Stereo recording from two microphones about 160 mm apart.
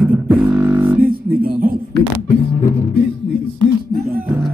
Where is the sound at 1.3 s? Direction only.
65° right (ahead or behind).